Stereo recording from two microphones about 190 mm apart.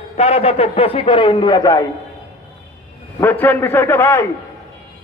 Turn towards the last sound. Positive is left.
turn(degrees=15)  # may be behind; listen again after turning